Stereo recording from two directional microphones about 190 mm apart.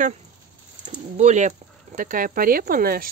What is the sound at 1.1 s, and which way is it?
Speech, 40° right (ahead or behind).